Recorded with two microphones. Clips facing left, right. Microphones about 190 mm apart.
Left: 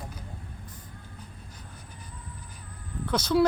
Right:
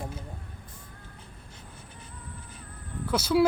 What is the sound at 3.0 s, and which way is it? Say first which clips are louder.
Speech: even; 5° right (ahead or behind).